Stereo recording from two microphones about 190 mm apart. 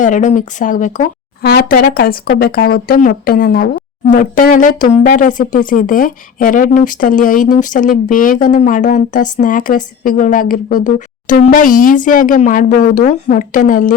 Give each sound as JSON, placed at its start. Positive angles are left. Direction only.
{"t": 0.0, "sound": "speech", "side_deg": 40}